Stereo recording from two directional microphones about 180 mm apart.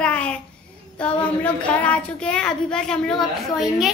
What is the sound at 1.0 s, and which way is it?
A woman's voice, 5° left (ahead or behind).